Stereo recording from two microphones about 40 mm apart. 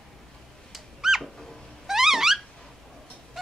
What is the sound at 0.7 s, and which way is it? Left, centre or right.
Owl, centre.